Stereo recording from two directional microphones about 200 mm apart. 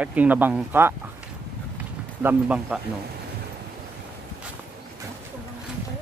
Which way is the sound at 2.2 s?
10° right (ahead or behind).